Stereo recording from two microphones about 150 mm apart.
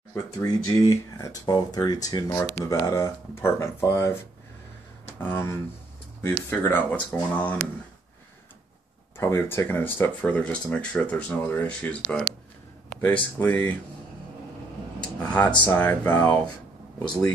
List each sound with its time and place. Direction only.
0.1 s speech: 20° left (ahead or behind)
5.2 s speech: 15° left (ahead or behind)
9.1 s speech: 15° left (ahead or behind)
15.2 s speech: 10° left (ahead or behind)